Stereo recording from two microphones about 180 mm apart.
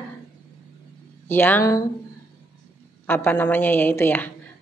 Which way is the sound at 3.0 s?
10° left (ahead or behind).